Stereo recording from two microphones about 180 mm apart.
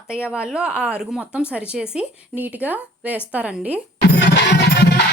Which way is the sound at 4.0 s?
65° left (ahead or behind).